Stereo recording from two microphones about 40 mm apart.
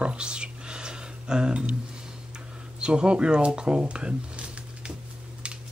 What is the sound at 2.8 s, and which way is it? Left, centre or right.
Speech, right.